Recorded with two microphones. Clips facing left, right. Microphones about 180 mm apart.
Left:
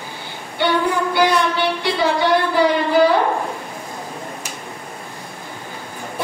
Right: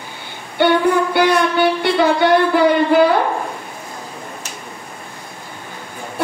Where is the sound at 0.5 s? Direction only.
55° right (ahead or behind).